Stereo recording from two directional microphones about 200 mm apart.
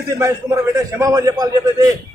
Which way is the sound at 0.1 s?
15° right (ahead or behind).